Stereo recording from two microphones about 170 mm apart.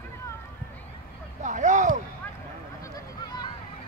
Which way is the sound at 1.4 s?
45° right (ahead or behind).